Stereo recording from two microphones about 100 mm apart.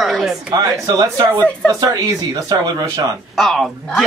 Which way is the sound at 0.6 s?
40° right (ahead or behind).